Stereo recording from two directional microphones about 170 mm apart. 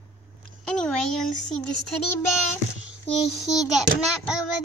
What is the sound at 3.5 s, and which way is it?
Speech, centre (ahead or behind).